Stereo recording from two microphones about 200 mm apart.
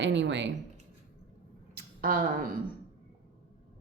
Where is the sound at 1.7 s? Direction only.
45° right (ahead or behind).